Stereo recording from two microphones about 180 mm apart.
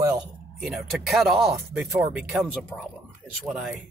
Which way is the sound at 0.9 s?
Centre (ahead or behind).